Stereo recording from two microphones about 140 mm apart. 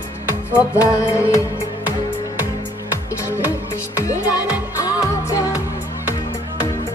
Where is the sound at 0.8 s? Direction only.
20° left (ahead or behind).